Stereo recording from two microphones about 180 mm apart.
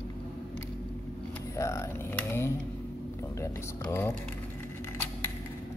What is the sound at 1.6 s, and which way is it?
Speech, 15° left (ahead or behind).